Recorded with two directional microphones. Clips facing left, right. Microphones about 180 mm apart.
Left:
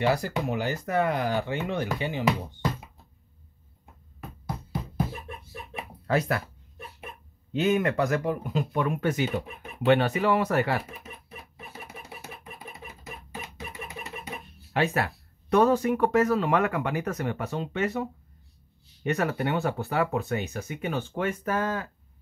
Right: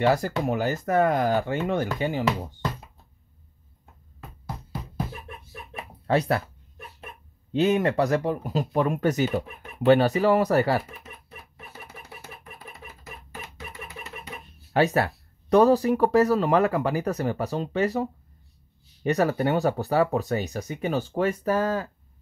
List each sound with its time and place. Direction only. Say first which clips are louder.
0.0 s speech: right 3 dB; 45° right (ahead or behind)
6.0 s speech: right 3 dB; 30° right (ahead or behind)
7.5 s speech: right 3 dB; 35° right (ahead or behind)
10.9 s a sound: left 1 dB; 15° left (ahead or behind)
14.7 s speech: right 4 dB; 40° right (ahead or behind)
19.0 s speech: right 4 dB; 35° right (ahead or behind)